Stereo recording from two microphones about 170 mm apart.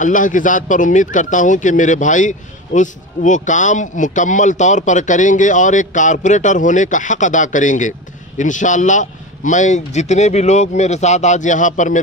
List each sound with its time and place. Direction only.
0.0 s speech: 50° left (ahead or behind)